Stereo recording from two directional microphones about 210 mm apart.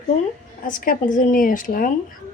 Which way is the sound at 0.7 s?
40° left (ahead or behind).